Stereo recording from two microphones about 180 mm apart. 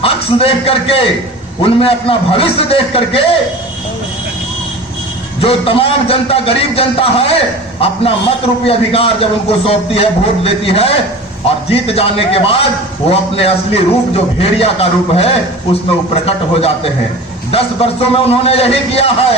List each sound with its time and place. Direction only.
0.0 s a man's voice: 30° left (ahead or behind)
5.4 s a man's voice: 30° left (ahead or behind)